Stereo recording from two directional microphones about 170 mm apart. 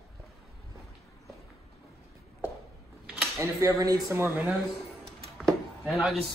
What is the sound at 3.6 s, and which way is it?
Speech, 20° right (ahead or behind).